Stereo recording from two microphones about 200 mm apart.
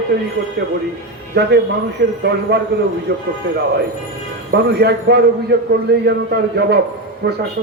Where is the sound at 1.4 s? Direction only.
55° right (ahead or behind).